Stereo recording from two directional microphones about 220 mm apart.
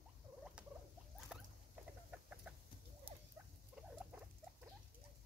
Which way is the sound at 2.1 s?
5° right (ahead or behind).